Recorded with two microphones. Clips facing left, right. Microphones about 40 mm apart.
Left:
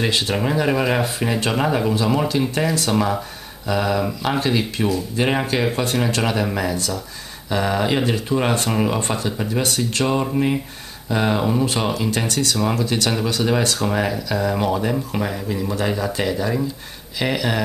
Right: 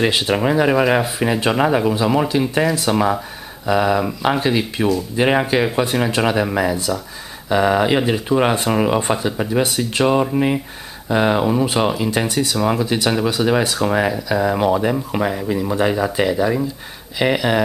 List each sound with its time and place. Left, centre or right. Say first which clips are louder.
0.0 s speech: right 4 dB; centre